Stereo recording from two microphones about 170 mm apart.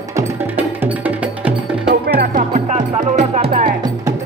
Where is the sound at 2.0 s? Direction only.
55° right (ahead or behind).